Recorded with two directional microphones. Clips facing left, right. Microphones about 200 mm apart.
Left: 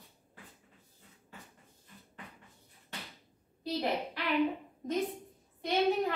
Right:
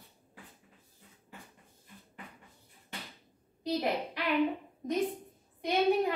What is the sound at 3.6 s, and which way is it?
Speech, 15° right (ahead or behind).